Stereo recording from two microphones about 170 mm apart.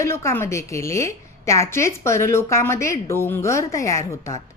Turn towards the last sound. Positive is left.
turn(degrees=20)  # may be behind; listen again after turning